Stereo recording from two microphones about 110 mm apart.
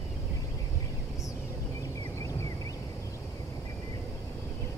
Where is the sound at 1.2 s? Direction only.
30° left (ahead or behind).